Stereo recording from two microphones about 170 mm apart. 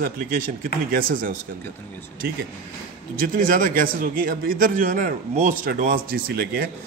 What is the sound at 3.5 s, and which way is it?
A man's voice, 55° right (ahead or behind).